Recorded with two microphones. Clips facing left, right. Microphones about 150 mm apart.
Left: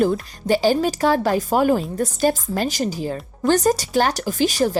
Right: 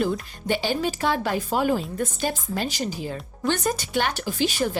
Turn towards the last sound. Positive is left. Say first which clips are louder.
# left 5 dB
turn(degrees=40)  # may be behind; listen again after turning